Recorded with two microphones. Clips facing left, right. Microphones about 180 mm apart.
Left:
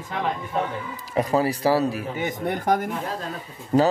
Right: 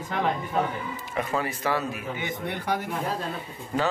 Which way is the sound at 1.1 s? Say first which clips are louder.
Left 7 dB; 35° left (ahead or behind).